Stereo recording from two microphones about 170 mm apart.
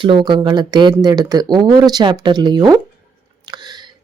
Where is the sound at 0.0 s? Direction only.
30° right (ahead or behind).